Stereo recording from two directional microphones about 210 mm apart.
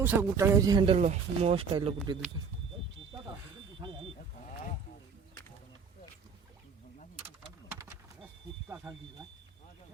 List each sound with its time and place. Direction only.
0.0 s speech: 10° right (ahead or behind)
3.8 s vehicle: 25° right (ahead or behind)
7.7 s power windows: 10° right (ahead or behind)
8.6 s a sound: 5° right (ahead or behind)